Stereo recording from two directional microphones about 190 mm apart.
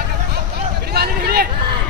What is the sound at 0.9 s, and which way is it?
Speech, 55° right (ahead or behind).